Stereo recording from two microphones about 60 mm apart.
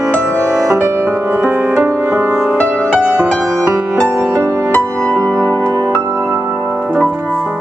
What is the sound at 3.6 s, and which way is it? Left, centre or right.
Music, right.